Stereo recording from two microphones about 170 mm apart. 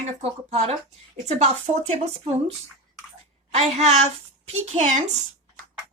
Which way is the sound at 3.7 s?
40° right (ahead or behind).